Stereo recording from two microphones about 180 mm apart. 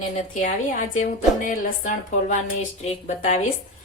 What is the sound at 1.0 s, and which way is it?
Speech, 45° left (ahead or behind).